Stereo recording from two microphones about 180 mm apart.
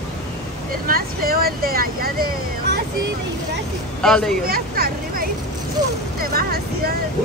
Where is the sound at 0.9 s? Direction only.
55° right (ahead or behind).